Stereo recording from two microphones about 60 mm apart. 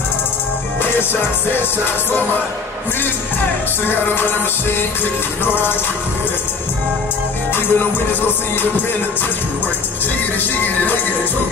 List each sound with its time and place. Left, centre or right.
7.5 s music: left